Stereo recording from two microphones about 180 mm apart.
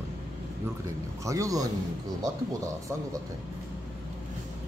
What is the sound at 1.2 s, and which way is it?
Speech, 20° right (ahead or behind).